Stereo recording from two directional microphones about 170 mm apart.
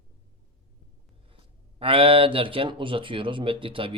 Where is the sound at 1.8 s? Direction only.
30° right (ahead or behind).